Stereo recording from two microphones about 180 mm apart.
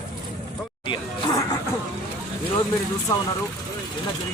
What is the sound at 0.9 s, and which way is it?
Speech, 25° left (ahead or behind).